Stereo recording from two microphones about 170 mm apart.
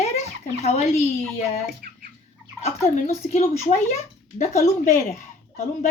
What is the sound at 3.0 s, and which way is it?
Speech, 45° left (ahead or behind).